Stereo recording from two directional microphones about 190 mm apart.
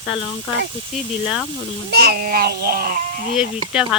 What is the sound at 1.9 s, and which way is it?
A child's voice, 55° right (ahead or behind).